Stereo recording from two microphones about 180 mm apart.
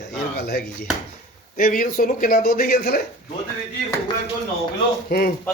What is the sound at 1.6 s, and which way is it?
Speech, 50° left (ahead or behind).